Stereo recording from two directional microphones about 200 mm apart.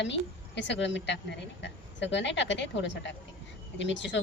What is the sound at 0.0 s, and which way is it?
Speech, 60° left (ahead or behind).